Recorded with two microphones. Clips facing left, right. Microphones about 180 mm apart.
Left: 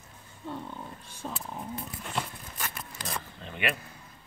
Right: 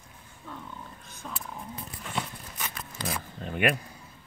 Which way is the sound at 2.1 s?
Centre (ahead or behind).